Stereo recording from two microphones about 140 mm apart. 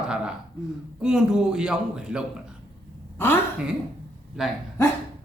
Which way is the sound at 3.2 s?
15° left (ahead or behind).